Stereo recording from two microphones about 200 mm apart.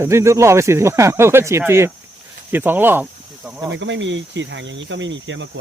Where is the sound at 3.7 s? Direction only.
65° right (ahead or behind).